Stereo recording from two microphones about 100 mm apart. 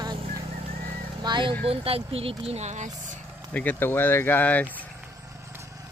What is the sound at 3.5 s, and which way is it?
Speech, 15° left (ahead or behind).